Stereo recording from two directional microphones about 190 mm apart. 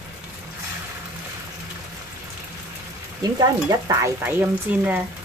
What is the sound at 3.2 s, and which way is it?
Speech, 20° right (ahead or behind).